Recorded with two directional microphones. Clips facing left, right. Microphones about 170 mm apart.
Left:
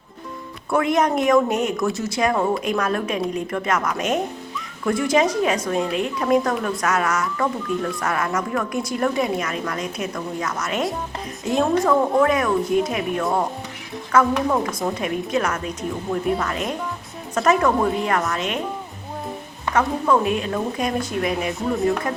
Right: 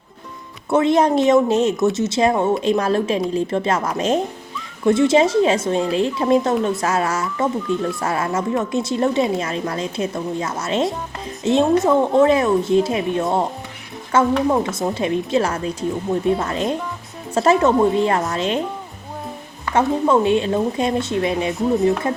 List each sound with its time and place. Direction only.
0.7 s speech: 25° right (ahead or behind)
19.7 s speech: 30° right (ahead or behind)